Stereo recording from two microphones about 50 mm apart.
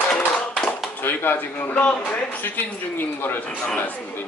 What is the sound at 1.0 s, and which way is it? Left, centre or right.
Speech, left.